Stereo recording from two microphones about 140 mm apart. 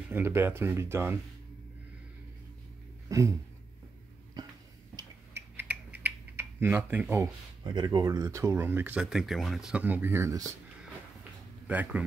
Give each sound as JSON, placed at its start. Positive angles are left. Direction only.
{"t": 0.1, "sound": "speech", "side_deg": -15}
{"t": 3.1, "sound": "a sound", "side_deg": -20}
{"t": 4.9, "sound": "typing", "side_deg": -15}
{"t": 7.6, "sound": "speech", "side_deg": -35}
{"t": 11.6, "sound": "speech", "side_deg": -10}